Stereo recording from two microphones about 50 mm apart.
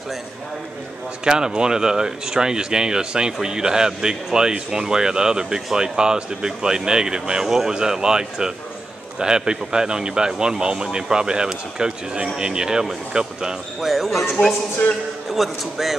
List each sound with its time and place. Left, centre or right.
1.2 s speech: centre
13.7 s a man's voice: centre
15.3 s a man's voice: centre